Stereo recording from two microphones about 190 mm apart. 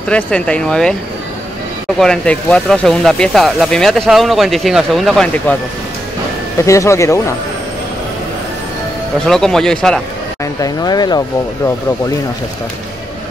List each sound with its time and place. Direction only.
0.1 s speech: 5° left (ahead or behind)
2.0 s speech: 5° left (ahead or behind)
6.6 s speech: 15° left (ahead or behind)
9.2 s speech: centre (ahead or behind)
10.4 s speech: 20° left (ahead or behind)